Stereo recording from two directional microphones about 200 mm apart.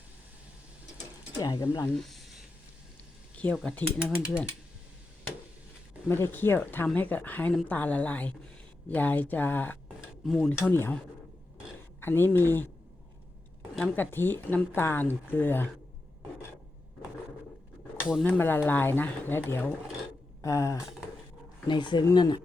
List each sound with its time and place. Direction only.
1.4 s speech: 15° left (ahead or behind)
2.0 s a sound: centre (ahead or behind)
3.3 s speech: 5° left (ahead or behind)
6.1 s speech: 10° left (ahead or behind)
10.0 s dishes: centre (ahead or behind)
10.6 s speech: 10° left (ahead or behind)
18.1 s speech: 5° left (ahead or behind)